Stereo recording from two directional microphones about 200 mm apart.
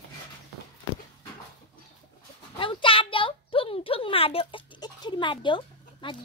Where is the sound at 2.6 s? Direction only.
25° left (ahead or behind).